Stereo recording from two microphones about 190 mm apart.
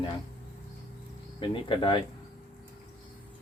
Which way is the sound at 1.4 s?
25° left (ahead or behind).